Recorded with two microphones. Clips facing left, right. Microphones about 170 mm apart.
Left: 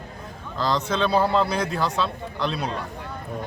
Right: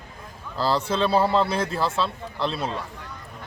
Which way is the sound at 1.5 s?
30° right (ahead or behind).